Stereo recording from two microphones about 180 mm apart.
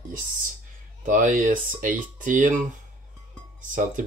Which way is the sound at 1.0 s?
45° right (ahead or behind).